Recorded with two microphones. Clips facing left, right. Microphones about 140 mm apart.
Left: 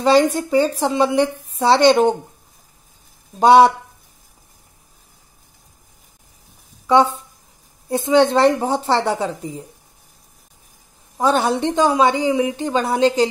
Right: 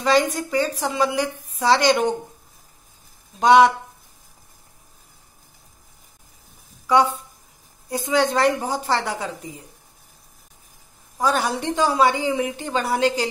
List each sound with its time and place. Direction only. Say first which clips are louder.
0.0 s a woman's voice: left 5 dB; 30° left (ahead or behind)
3.3 s speech: left 3 dB; 35° left (ahead or behind)
6.9 s a woman's voice: left 3 dB; 25° left (ahead or behind)
11.1 s a woman's voice: left 5 dB; 25° left (ahead or behind)